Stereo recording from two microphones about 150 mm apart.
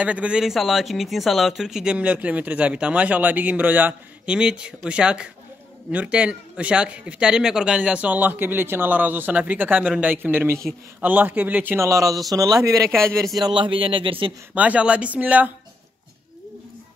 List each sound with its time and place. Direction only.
0.0 s a man's voice: 10° right (ahead or behind); by 14.3 s 35° right (ahead or behind)
14.5 s a man's voice: 10° right (ahead or behind)